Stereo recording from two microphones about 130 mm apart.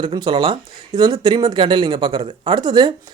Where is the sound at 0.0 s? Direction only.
40° right (ahead or behind).